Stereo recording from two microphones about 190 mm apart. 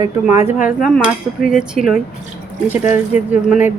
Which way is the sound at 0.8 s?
Centre (ahead or behind).